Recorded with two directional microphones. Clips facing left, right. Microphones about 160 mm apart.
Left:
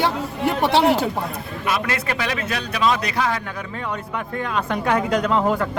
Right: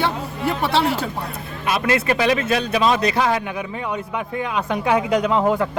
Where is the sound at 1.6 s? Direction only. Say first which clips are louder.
Right 4 dB; 25° right (ahead or behind).